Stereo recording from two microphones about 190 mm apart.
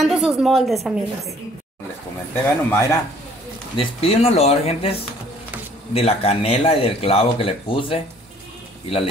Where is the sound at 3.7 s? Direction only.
30° left (ahead or behind).